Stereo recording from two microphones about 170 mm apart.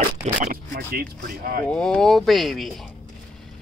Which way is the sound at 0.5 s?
65° right (ahead or behind).